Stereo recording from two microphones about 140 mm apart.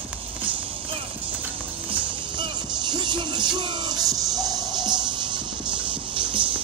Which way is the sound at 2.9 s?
30° right (ahead or behind).